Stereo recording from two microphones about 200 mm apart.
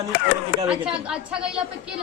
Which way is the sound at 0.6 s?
5° right (ahead or behind).